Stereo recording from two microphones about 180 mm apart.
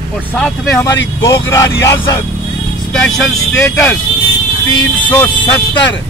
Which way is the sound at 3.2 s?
5° left (ahead or behind).